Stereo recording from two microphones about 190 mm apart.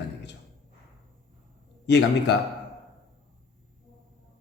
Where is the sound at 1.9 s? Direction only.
65° left (ahead or behind).